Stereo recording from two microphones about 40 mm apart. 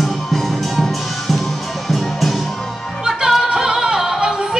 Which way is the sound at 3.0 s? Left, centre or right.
Centre.